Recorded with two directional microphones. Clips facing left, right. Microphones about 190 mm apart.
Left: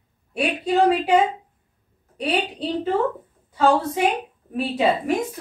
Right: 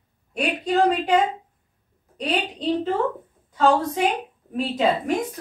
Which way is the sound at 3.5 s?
5° left (ahead or behind).